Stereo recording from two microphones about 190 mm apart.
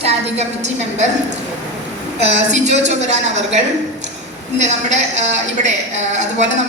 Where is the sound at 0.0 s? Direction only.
35° right (ahead or behind).